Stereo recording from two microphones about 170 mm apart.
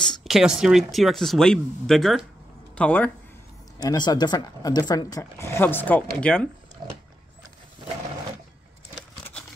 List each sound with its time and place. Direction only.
0.0 s speech: centre (ahead or behind)
3.7 s speech: 25° left (ahead or behind); by 6.5 s 5° left (ahead or behind)